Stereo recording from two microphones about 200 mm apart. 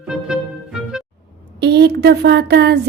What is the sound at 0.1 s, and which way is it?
Music, 5° right (ahead or behind).